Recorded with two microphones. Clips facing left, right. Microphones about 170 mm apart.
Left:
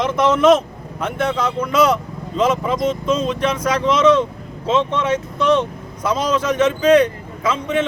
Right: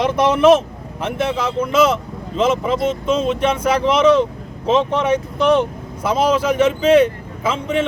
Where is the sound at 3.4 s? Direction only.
30° right (ahead or behind).